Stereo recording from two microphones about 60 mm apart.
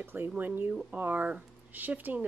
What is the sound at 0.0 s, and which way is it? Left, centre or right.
Speech, right.